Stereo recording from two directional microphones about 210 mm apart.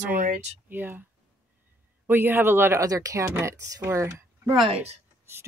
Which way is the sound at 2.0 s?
10° right (ahead or behind).